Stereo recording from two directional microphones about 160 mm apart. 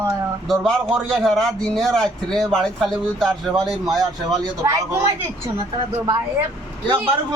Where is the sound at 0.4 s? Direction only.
5° left (ahead or behind).